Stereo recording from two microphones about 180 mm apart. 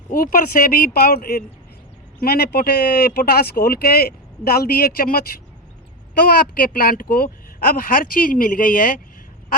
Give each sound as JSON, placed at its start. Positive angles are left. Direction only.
{"t": 0.1, "sound": "speech", "side_deg": 50}